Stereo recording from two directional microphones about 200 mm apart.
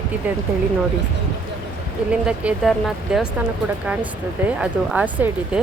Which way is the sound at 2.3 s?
5° right (ahead or behind).